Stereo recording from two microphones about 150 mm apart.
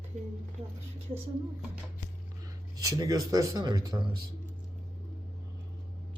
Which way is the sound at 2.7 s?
25° right (ahead or behind).